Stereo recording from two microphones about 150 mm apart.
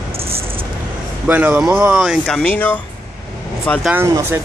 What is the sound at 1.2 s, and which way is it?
Speech, 10° right (ahead or behind).